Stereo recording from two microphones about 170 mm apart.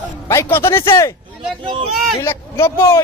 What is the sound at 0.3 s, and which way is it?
Speech, 15° left (ahead or behind).